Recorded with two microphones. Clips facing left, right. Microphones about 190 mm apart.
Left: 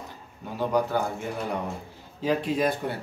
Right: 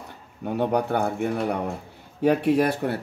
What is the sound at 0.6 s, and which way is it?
Speech, 65° right (ahead or behind).